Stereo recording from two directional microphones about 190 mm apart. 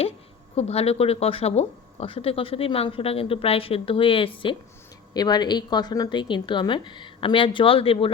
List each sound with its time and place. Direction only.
0.5 s speech: 30° left (ahead or behind)